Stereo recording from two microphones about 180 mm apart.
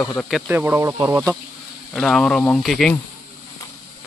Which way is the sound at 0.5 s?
15° right (ahead or behind).